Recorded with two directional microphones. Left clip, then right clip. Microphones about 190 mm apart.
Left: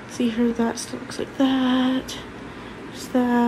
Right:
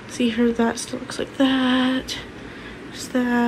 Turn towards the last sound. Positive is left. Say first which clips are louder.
# left 1 dB
turn(degrees=15)  # may be behind; listen again after turning